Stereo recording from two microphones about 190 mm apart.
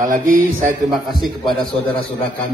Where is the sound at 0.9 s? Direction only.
Centre (ahead or behind).